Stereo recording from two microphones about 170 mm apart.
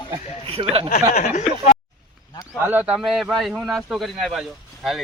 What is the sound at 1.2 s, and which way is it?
Speech, 45° left (ahead or behind).